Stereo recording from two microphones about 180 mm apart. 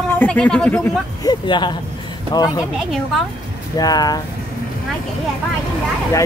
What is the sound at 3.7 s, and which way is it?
Speech, 20° left (ahead or behind).